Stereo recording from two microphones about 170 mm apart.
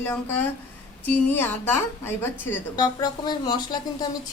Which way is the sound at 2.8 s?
25° left (ahead or behind).